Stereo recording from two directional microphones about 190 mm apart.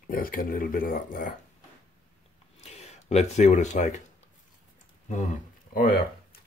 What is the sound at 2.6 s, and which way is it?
Speech, 35° left (ahead or behind).